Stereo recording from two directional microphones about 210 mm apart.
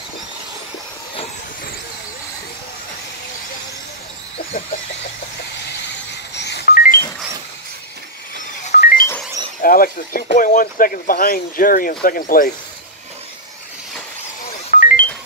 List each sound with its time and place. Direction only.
6.3 s music: 55° left (ahead or behind)
8.7 s music: 45° left (ahead or behind)
9.6 s speech: 45° left (ahead or behind)
14.7 s music: 45° left (ahead or behind)